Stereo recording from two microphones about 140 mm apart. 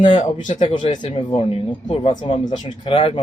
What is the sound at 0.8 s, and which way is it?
Speech, 40° left (ahead or behind).